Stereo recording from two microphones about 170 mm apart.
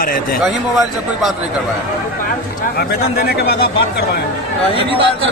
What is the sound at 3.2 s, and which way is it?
Speech, 65° left (ahead or behind).